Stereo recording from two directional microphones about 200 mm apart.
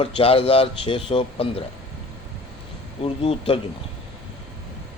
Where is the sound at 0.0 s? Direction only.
30° left (ahead or behind).